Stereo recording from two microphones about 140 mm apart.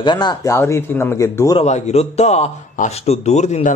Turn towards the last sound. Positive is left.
turn(degrees=55)  # may be behind; listen again after turning